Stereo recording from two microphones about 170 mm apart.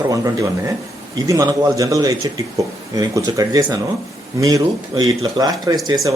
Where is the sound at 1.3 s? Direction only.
20° right (ahead or behind).